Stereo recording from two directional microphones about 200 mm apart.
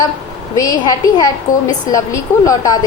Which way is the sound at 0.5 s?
20° left (ahead or behind).